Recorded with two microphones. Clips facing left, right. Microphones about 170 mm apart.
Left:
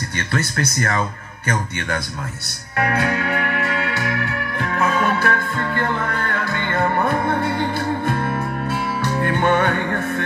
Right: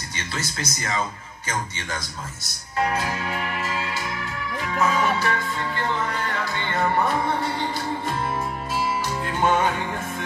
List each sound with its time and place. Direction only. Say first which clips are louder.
0.3 s speech: left 8 dB; 60° left (ahead or behind)
2.4 s music: left 2 dB; 65° left (ahead or behind)